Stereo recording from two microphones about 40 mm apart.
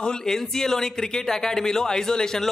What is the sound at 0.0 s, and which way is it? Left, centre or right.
Speech, centre.